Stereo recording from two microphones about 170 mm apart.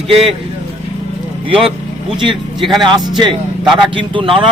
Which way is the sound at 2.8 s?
25° right (ahead or behind).